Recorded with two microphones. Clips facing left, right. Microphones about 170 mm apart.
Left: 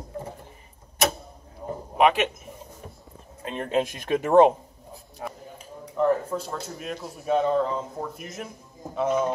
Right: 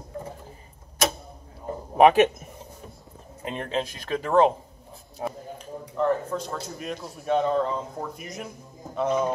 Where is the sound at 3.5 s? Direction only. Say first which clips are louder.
Left 4 dB; 10° left (ahead or behind).